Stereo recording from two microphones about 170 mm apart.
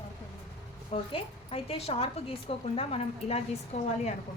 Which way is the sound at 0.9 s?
35° left (ahead or behind).